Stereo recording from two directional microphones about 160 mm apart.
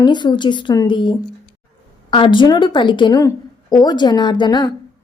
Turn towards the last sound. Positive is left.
turn(degrees=25)  # may be behind; listen again after turning